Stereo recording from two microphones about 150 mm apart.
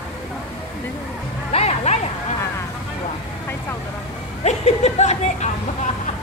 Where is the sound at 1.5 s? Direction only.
45° left (ahead or behind).